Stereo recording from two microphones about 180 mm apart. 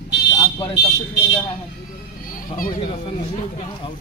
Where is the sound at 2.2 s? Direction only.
50° left (ahead or behind).